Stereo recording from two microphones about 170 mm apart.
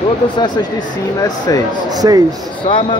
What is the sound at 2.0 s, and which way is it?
Speech, 20° right (ahead or behind).